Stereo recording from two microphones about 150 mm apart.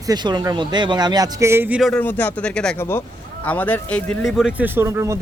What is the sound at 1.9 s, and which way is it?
Speech, 10° left (ahead or behind).